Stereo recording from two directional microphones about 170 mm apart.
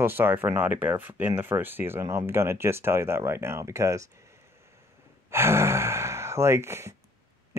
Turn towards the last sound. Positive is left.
turn(degrees=-15)  # may be behind; listen again after turning